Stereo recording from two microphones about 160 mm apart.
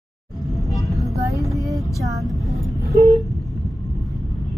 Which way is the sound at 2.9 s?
20° right (ahead or behind).